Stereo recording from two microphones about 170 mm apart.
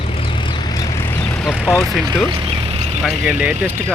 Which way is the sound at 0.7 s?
15° left (ahead or behind).